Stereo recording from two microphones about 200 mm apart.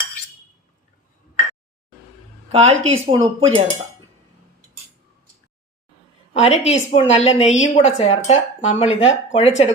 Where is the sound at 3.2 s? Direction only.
30° right (ahead or behind).